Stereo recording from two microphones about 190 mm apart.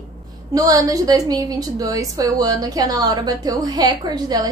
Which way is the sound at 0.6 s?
20° right (ahead or behind).